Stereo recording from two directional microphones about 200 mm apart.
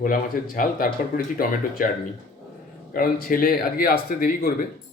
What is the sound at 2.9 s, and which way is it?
Speech, 45° left (ahead or behind).